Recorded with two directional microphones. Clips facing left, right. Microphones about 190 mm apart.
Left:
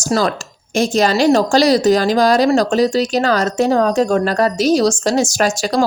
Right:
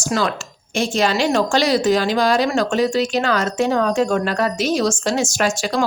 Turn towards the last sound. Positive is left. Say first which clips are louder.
# left 4 dB
turn(degrees=40)  # may be behind; listen again after turning